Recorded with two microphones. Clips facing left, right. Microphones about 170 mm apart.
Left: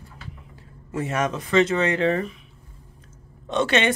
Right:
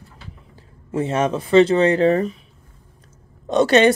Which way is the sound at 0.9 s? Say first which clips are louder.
Right 5 dB; 30° right (ahead or behind).